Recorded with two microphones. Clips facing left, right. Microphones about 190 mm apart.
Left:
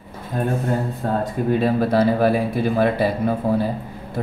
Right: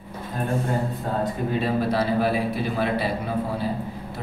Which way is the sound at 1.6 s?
50° left (ahead or behind).